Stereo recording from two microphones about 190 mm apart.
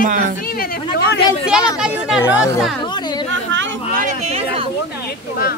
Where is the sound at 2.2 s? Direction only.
15° left (ahead or behind).